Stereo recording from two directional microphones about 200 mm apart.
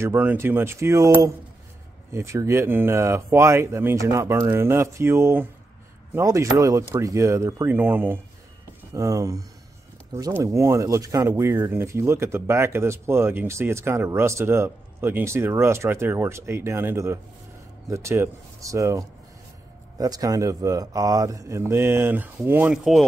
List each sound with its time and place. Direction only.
0.0 s speech: 10° right (ahead or behind)